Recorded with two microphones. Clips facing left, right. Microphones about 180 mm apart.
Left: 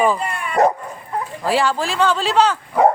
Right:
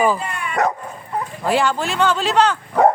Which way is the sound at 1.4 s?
Centre (ahead or behind).